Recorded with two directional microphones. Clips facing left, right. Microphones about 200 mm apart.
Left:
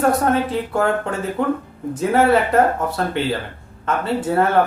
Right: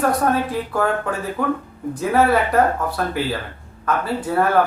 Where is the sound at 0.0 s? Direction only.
25° left (ahead or behind).